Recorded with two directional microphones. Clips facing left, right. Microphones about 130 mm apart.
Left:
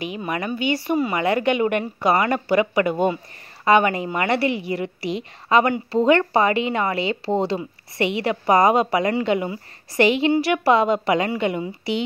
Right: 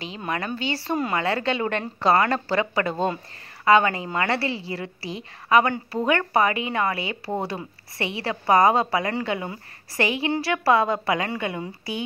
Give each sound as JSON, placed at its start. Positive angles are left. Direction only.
{"t": 0.3, "sound": "a woman's voice", "side_deg": 15}
{"t": 0.9, "sound": "speech", "side_deg": 5}
{"t": 1.2, "sound": "a woman's voice", "side_deg": 15}